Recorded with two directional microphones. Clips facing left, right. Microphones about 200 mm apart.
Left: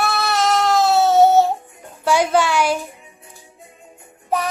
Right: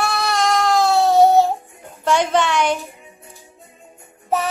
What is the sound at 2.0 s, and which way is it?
Music, 5° left (ahead or behind).